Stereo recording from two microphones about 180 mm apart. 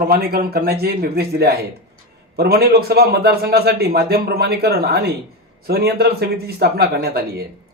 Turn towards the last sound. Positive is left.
turn(degrees=-60)  # may be behind; listen again after turning